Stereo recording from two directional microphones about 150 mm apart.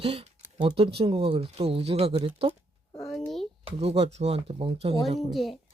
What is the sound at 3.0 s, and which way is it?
Speech, centre (ahead or behind).